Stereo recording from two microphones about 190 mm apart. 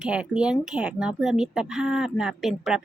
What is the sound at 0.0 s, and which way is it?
Speech, 5° right (ahead or behind).